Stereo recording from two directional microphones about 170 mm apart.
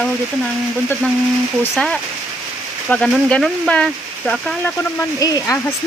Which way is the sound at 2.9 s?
Centre (ahead or behind).